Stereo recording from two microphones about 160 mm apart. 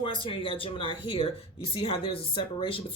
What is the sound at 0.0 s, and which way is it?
Speech, 35° left (ahead or behind).